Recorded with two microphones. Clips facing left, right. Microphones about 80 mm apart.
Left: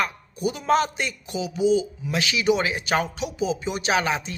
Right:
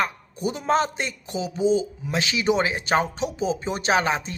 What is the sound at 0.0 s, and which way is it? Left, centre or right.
A man's voice, right.